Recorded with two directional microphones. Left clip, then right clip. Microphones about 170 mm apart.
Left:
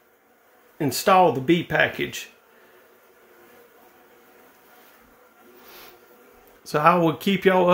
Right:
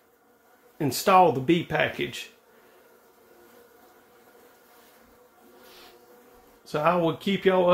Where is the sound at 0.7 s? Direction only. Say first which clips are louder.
Left 2 dB; 10° left (ahead or behind).